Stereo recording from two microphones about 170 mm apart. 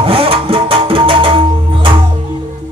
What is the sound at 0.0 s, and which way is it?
Music, 35° right (ahead or behind).